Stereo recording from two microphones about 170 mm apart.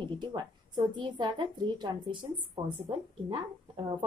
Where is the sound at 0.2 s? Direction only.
25° right (ahead or behind).